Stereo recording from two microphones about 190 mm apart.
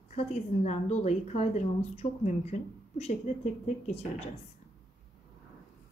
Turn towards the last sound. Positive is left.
turn(degrees=35)  # may be behind; listen again after turning